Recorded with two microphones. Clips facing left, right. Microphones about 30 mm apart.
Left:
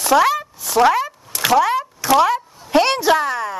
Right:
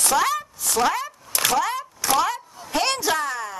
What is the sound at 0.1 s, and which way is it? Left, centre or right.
Speech, centre.